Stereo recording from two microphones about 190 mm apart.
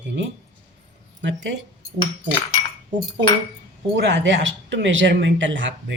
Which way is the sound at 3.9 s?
70° right (ahead or behind).